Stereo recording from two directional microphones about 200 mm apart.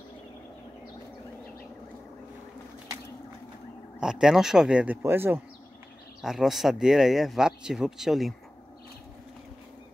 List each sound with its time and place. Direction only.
4.0 s speech: 5° right (ahead or behind)